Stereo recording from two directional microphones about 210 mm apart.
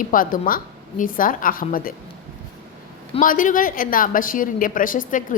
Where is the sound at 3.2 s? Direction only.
40° left (ahead or behind).